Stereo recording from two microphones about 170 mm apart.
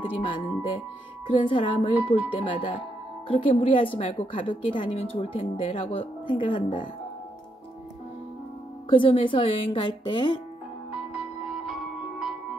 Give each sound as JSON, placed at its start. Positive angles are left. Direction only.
{"t": 0.2, "sound": "a woman's voice", "side_deg": 30}
{"t": 8.9, "sound": "a woman's voice", "side_deg": 30}
{"t": 10.9, "sound": "music", "side_deg": -5}